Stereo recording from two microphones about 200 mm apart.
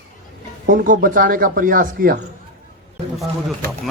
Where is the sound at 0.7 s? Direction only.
45° right (ahead or behind).